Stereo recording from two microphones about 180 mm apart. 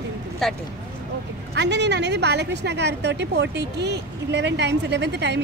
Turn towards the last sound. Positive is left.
turn(degrees=-70)  # may be behind; listen again after turning